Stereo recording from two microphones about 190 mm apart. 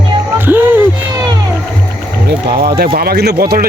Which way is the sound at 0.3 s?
10° right (ahead or behind).